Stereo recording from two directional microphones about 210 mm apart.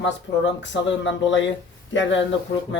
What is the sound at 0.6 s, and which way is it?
Speech, 60° left (ahead or behind).